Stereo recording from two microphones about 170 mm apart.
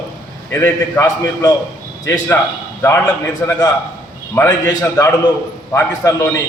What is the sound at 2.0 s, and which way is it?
Speech, 15° left (ahead or behind).